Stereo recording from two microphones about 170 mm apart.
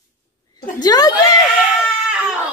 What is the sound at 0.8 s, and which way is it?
Speech, 20° left (ahead or behind).